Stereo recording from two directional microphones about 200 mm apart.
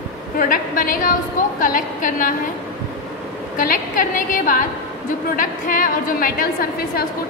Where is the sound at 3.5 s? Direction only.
40° left (ahead or behind).